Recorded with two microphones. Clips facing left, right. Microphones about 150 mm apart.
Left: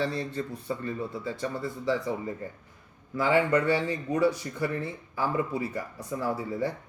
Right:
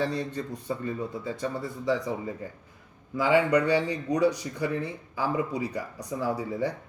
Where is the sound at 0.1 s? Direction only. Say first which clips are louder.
Right 1 dB; 20° right (ahead or behind).